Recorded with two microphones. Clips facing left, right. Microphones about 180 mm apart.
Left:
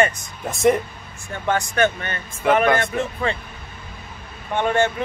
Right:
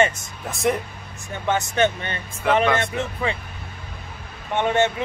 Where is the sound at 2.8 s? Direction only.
20° right (ahead or behind).